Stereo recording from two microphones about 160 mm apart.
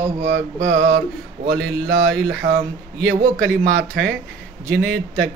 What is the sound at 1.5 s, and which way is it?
Speech, 5° left (ahead or behind).